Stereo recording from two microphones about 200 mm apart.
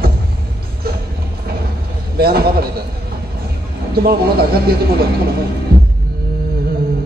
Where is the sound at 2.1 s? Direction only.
50° right (ahead or behind).